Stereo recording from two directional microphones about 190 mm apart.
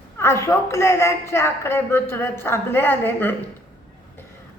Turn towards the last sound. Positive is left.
turn(degrees=10)  # may be behind; listen again after turning